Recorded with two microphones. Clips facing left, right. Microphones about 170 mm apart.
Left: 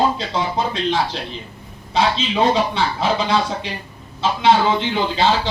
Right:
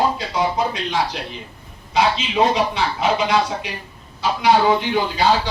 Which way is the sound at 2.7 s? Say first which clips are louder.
Even; 30° left (ahead or behind).